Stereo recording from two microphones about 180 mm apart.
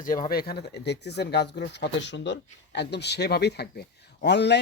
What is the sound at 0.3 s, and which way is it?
Speech, 60° left (ahead or behind).